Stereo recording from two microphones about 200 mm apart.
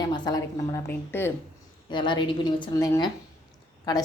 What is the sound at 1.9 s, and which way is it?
A woman's voice, 25° left (ahead or behind).